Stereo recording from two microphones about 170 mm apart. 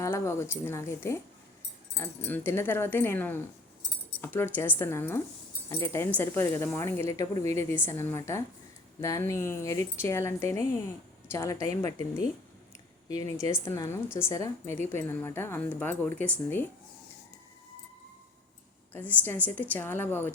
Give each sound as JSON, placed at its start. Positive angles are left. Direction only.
{"t": 0.0, "sound": "a woman's voice", "side_deg": 15}
{"t": 13.1, "sound": "a woman's voice", "side_deg": 20}
{"t": 18.9, "sound": "a woman's voice", "side_deg": 10}